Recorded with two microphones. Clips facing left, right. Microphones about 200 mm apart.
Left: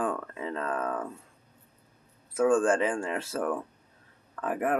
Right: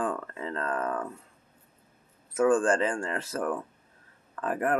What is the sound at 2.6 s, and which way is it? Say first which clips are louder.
Speech: left 1 dB; 20° left (ahead or behind).